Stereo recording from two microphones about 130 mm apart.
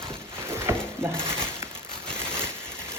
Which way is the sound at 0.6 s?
20° right (ahead or behind).